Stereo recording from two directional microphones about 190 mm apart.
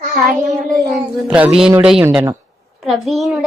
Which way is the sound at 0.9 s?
5° right (ahead or behind).